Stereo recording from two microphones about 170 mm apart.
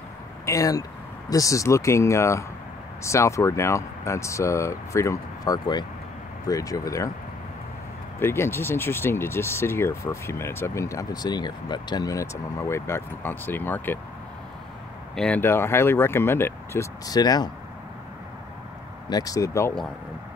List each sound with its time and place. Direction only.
0.5 s speech: 20° left (ahead or behind)
8.2 s speech: 15° left (ahead or behind)
15.1 s speech: 5° left (ahead or behind); by 17.5 s 25° left (ahead or behind)
19.0 s speech: 20° left (ahead or behind)